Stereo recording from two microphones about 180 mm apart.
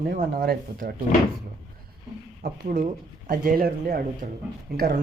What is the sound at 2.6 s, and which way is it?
Speech, 45° right (ahead or behind).